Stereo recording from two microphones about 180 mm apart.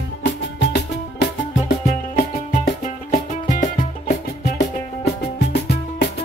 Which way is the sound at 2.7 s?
50° left (ahead or behind).